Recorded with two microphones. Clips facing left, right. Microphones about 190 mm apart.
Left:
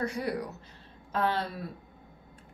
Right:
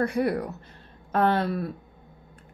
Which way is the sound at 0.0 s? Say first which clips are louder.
Right 7 dB; 55° right (ahead or behind).